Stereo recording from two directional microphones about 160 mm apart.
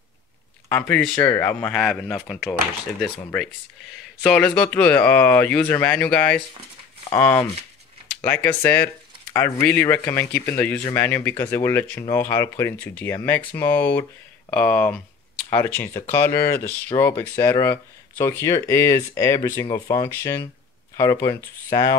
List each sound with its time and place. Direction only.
0.7 s speech: 10° left (ahead or behind)
4.2 s speech: 5° left (ahead or behind); by 21.9 s 20° left (ahead or behind)